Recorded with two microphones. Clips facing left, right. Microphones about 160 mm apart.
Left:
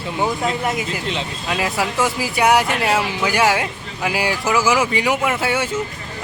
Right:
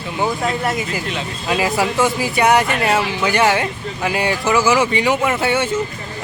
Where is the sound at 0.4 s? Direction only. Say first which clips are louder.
Right 1 dB; 15° left (ahead or behind).